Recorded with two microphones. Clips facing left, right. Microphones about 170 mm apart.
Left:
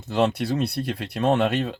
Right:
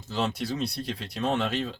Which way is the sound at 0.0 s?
65° left (ahead or behind).